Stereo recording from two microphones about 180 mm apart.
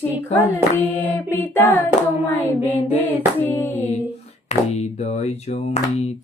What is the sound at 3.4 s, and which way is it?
Child singing, 10° left (ahead or behind).